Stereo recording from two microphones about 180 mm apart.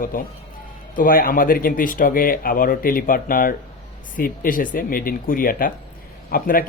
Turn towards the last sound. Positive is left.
turn(degrees=55)  # may be behind; listen again after turning